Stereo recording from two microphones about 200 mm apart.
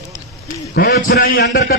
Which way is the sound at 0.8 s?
45° left (ahead or behind).